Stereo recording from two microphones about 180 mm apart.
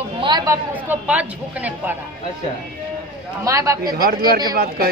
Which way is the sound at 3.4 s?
15° right (ahead or behind).